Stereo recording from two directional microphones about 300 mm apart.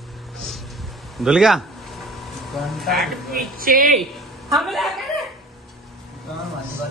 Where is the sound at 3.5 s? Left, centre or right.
Right.